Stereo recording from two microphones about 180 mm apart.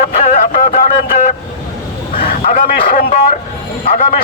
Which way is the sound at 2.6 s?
50° left (ahead or behind).